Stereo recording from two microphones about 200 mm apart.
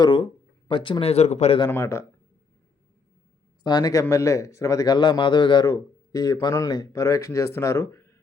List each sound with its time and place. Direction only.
0.0 s speech: 25° left (ahead or behind)
1.7 s speech: 10° left (ahead or behind)
3.6 s speech: 20° left (ahead or behind)